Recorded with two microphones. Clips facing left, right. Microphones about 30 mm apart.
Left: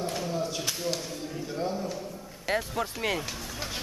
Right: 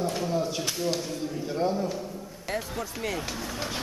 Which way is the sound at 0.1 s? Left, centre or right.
Centre.